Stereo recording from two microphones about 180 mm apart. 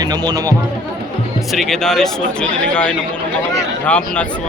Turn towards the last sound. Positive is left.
turn(degrees=5)  # may be behind; listen again after turning